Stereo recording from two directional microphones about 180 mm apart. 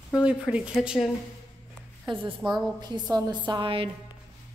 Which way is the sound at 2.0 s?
30° right (ahead or behind).